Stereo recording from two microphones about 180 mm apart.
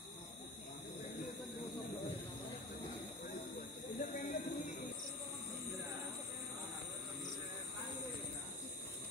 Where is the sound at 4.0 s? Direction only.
45° left (ahead or behind).